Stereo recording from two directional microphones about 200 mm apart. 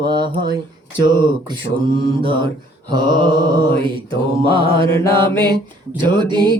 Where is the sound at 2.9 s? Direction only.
20° right (ahead or behind).